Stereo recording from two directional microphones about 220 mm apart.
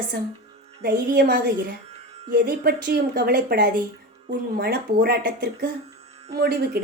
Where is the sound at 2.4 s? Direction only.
45° right (ahead or behind).